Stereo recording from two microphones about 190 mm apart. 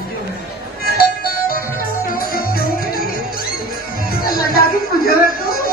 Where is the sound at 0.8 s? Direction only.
55° left (ahead or behind).